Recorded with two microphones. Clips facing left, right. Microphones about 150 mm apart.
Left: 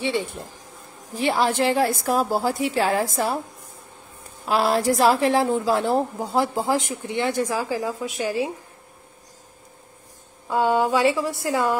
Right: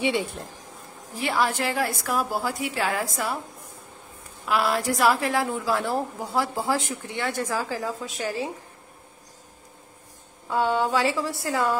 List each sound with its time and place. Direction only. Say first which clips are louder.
0.2 s speech: even; centre (ahead or behind)
1.1 s a woman's voice: left 4 dB; 25° left (ahead or behind)
4.5 s a woman's voice: left 4 dB; 30° left (ahead or behind)
10.5 s a woman's voice: left 3 dB; 20° left (ahead or behind)